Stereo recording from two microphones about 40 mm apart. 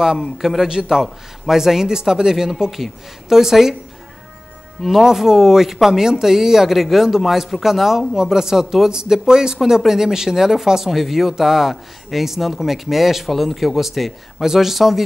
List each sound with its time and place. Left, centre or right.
0.2 s speech: centre
0.7 s speech: centre
1.0 s speech: centre
1.6 s speech: centre
5.0 s speech: centre